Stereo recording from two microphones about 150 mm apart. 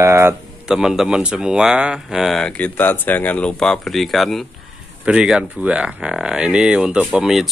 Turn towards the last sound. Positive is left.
turn(degrees=0)  # may be behind; listen again after turning